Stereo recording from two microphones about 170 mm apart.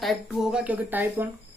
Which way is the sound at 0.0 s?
Centre (ahead or behind).